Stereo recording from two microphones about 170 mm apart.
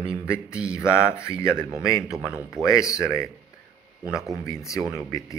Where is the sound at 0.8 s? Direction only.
15° left (ahead or behind).